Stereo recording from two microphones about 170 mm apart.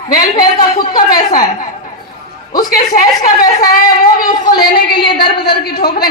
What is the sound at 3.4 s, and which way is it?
A man's voice, 60° left (ahead or behind).